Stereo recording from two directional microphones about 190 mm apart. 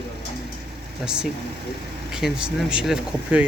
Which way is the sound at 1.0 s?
5° right (ahead or behind).